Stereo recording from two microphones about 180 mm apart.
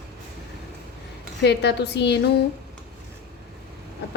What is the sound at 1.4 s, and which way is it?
Speech, 70° left (ahead or behind).